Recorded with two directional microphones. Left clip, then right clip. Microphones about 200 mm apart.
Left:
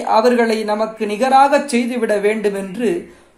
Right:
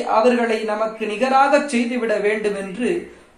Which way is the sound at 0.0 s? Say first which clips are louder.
Left 3 dB; 50° left (ahead or behind).